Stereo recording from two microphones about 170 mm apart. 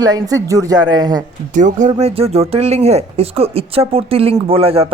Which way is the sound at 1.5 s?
45° right (ahead or behind).